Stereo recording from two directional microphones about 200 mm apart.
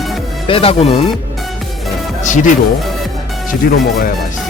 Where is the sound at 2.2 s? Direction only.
40° left (ahead or behind).